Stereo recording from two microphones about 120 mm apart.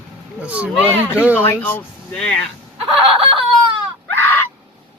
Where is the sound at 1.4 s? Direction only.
15° left (ahead or behind).